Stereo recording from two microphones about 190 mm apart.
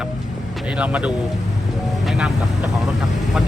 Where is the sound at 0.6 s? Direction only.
5° right (ahead or behind).